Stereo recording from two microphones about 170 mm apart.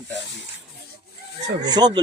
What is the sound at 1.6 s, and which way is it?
Speech, 25° right (ahead or behind).